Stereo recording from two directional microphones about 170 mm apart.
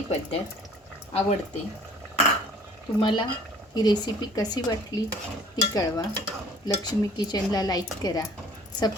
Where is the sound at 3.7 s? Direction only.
25° left (ahead or behind).